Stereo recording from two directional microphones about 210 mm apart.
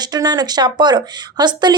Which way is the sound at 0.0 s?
20° right (ahead or behind).